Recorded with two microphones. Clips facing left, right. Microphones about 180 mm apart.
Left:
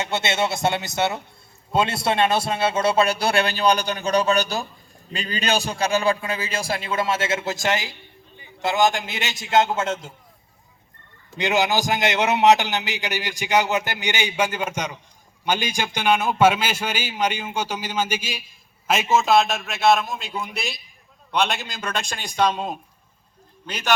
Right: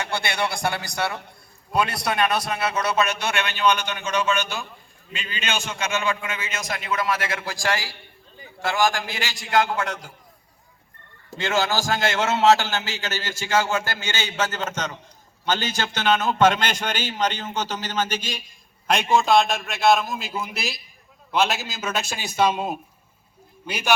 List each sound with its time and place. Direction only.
0.0 s a man's voice: 20° left (ahead or behind)
11.3 s a man's voice: 15° left (ahead or behind); by 23.9 s 10° right (ahead or behind)